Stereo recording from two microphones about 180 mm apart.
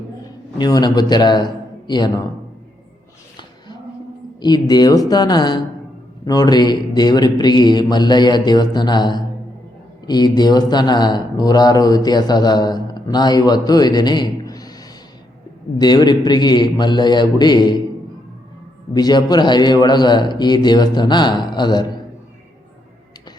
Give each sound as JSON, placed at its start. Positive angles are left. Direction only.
{"t": 0.6, "sound": "speech", "side_deg": 20}
{"t": 4.4, "sound": "speech", "side_deg": 25}
{"t": 15.8, "sound": "speech", "side_deg": 25}
{"t": 18.9, "sound": "speech", "side_deg": 20}